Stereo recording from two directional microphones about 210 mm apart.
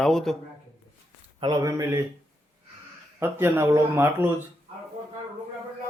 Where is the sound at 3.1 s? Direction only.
10° right (ahead or behind).